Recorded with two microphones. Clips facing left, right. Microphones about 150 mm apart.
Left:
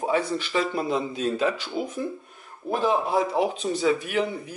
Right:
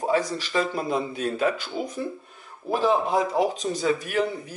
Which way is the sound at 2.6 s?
5° left (ahead or behind).